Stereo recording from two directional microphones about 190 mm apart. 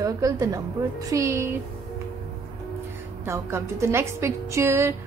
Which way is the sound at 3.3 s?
15° right (ahead or behind).